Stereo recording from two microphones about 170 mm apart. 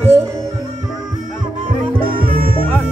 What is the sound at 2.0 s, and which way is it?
Music, 30° right (ahead or behind).